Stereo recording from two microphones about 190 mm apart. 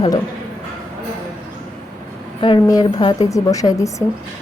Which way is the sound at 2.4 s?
25° left (ahead or behind).